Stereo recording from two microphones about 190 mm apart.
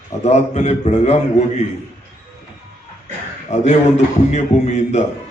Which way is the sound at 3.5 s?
35° left (ahead or behind).